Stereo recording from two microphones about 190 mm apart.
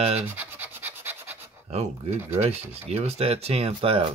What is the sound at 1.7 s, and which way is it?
Speech, 30° right (ahead or behind).